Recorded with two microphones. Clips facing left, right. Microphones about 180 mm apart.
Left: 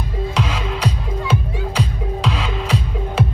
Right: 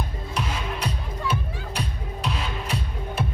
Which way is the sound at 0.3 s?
90° left.